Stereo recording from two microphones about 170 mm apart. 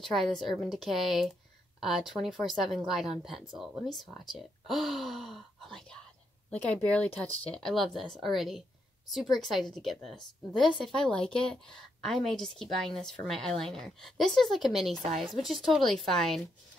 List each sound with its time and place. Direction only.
0.0 s speech: centre (ahead or behind)
15.0 s a woman's voice: 45° right (ahead or behind)
15.2 s speech: centre (ahead or behind)